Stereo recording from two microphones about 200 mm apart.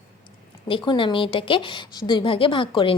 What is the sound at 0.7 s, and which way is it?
A woman's voice, 25° left (ahead or behind).